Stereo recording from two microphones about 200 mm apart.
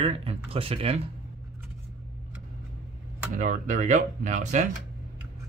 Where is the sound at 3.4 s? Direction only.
40° right (ahead or behind).